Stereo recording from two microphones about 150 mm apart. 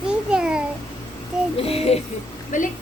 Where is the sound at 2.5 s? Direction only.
60° left (ahead or behind).